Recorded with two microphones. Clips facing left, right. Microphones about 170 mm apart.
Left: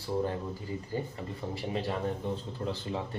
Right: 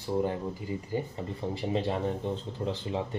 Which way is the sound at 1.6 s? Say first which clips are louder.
Right 3 dB; 25° right (ahead or behind).